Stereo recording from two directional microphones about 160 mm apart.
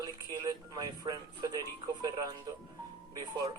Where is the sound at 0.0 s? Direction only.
25° right (ahead or behind).